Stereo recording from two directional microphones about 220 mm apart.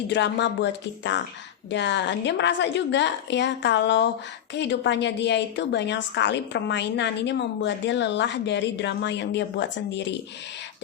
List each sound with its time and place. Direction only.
0.1 s a woman's voice: 50° left (ahead or behind)